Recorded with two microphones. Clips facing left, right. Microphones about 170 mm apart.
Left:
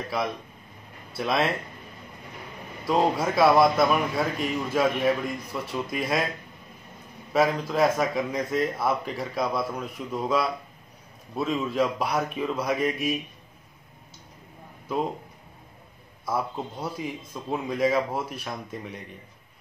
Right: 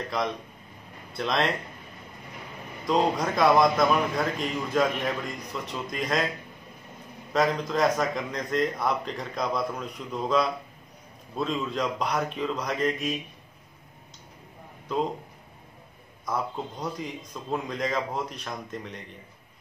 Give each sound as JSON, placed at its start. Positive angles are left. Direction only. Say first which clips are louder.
{"t": 1.1, "sound": "a man's voice", "louder": "left 1 dB", "side_deg": 5}
{"t": 2.8, "sound": "a man's voice", "louder": "left 1 dB", "side_deg": 5}
{"t": 7.3, "sound": "a man's voice", "louder": "left 2 dB", "side_deg": 5}
{"t": 16.3, "sound": "a man's voice", "louder": "left 2 dB", "side_deg": 5}